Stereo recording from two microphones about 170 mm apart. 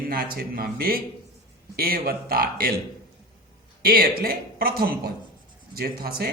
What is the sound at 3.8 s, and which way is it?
A man's voice, 60° right (ahead or behind).